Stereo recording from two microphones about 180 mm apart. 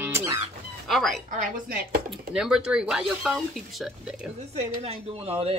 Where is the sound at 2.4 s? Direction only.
5° right (ahead or behind).